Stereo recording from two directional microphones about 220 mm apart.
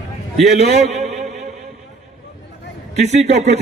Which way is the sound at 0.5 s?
30° right (ahead or behind).